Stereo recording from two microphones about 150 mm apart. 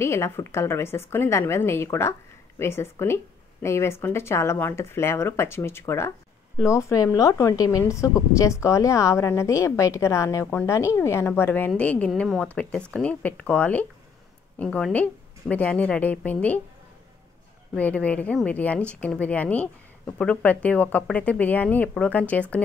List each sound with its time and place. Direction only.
0.0 s a woman's voice: 20° left (ahead or behind)
17.7 s a woman's voice: 10° left (ahead or behind)